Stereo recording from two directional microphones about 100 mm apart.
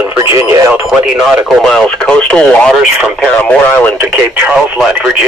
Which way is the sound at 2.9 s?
10° right (ahead or behind).